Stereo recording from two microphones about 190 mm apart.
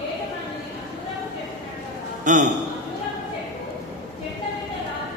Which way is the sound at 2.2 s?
40° right (ahead or behind).